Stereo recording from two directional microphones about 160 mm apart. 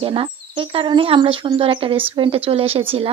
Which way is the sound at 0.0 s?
35° right (ahead or behind).